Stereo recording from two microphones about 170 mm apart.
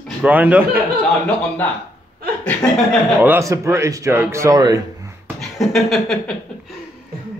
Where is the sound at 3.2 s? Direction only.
15° right (ahead or behind).